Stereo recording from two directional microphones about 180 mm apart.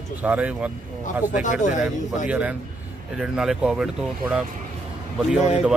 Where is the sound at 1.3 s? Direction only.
45° left (ahead or behind).